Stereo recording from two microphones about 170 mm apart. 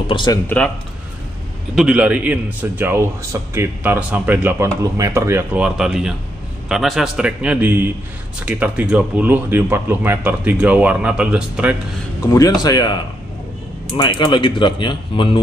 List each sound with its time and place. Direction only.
0.0 s speech: 30° left (ahead or behind)
1.8 s a man's voice: 5° right (ahead or behind)
12.2 s speech: 20° left (ahead or behind)